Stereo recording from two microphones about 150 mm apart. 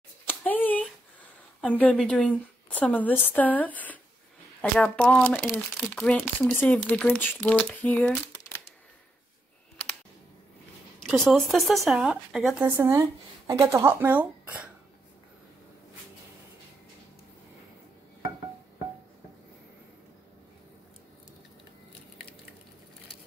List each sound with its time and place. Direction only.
0.3 s a sound: 10° left (ahead or behind)
1.6 s speech: 10° left (ahead or behind)
11.0 s speech: centre (ahead or behind)
12.6 s speech: 15° right (ahead or behind)